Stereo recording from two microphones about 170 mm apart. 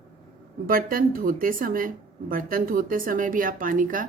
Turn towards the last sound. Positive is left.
turn(degrees=-55)  # may be behind; listen again after turning